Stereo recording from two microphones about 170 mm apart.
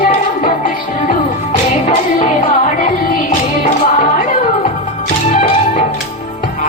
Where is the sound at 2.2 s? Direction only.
45° left (ahead or behind).